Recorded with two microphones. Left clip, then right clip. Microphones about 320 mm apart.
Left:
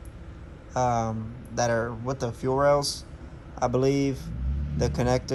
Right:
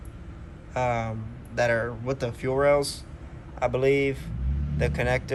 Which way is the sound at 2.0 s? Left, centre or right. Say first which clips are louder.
Even; centre.